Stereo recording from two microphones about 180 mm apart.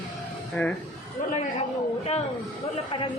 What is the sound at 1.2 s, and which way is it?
Speech, 45° left (ahead or behind).